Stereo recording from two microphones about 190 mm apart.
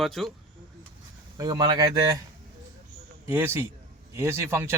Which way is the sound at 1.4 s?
20° right (ahead or behind).